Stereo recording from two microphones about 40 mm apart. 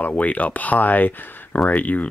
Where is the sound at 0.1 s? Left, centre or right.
Left.